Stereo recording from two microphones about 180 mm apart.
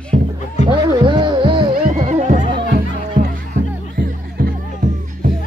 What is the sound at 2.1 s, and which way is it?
Music, 40° right (ahead or behind).